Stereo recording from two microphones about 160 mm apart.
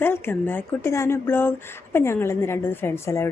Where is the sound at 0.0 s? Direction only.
15° left (ahead or behind).